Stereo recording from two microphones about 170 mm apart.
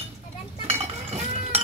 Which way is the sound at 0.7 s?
35° right (ahead or behind).